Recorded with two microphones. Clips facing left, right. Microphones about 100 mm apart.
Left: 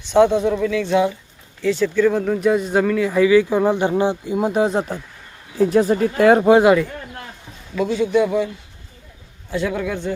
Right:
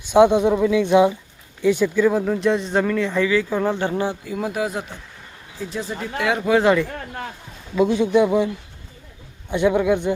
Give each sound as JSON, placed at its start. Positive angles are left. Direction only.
{"t": 0.1, "sound": "speech", "side_deg": -15}
{"t": 5.5, "sound": "speech", "side_deg": 50}
{"t": 6.5, "sound": "speech", "side_deg": 15}
{"t": 7.8, "sound": "speech", "side_deg": -20}
{"t": 9.5, "sound": "a man's voice", "side_deg": -20}